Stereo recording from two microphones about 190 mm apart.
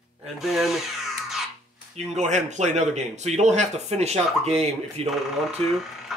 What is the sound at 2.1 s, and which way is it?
Speech, 35° right (ahead or behind).